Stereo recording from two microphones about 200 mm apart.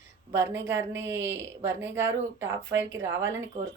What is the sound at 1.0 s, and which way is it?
Speech, 65° right (ahead or behind).